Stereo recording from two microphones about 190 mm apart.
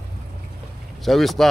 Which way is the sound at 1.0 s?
Centre (ahead or behind).